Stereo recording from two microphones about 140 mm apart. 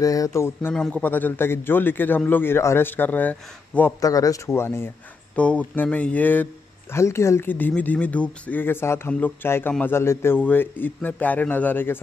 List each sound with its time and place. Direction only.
0.0 s speech: 25° left (ahead or behind)
4.0 s speech: 25° left (ahead or behind)